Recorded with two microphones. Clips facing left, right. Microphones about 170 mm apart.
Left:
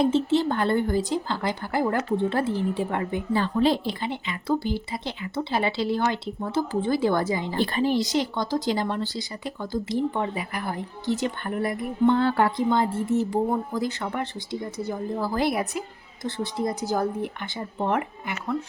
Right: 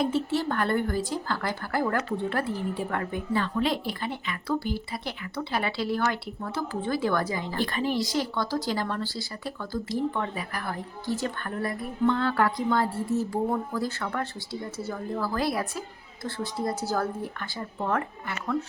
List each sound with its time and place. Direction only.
0.0 s speech: 25° left (ahead or behind)